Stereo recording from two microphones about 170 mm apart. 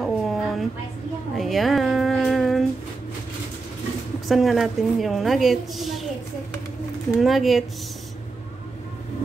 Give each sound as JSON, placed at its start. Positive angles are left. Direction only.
{"t": 0.0, "sound": "a sound", "side_deg": 0}
{"t": 4.3, "sound": "a woman's voice", "side_deg": 0}
{"t": 7.2, "sound": "a woman's voice", "side_deg": 0}